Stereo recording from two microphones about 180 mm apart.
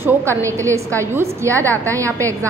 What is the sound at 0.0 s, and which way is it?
A woman's voice, 15° right (ahead or behind).